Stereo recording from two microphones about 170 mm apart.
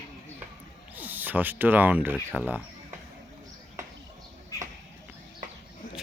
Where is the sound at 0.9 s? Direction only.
10° right (ahead or behind).